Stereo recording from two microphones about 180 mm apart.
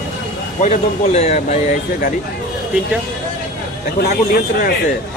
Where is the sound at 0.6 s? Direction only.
40° left (ahead or behind).